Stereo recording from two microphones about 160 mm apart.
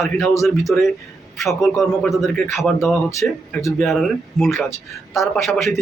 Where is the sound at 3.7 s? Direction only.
Centre (ahead or behind).